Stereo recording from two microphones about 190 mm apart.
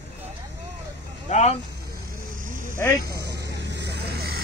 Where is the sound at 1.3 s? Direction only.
35° left (ahead or behind).